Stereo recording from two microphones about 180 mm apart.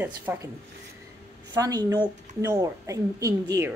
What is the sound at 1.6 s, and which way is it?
A woman's voice, 20° right (ahead or behind).